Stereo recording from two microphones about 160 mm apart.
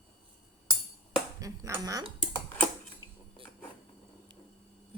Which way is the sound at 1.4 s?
20° right (ahead or behind).